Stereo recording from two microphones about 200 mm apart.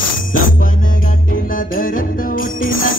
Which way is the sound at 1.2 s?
45° left (ahead or behind).